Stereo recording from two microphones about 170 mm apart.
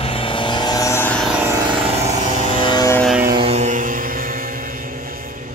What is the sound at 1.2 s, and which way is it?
Vehicle, 5° right (ahead or behind).